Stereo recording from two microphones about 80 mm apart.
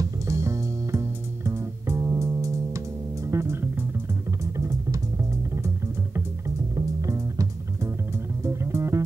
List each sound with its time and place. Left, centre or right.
0.0 s music: right
4.6 s music: right
6.4 s music: right